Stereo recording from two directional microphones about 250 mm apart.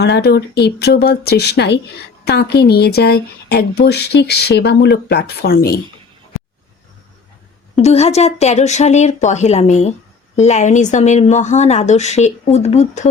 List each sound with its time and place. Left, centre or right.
0.0 s speech: left
7.8 s a woman's voice: left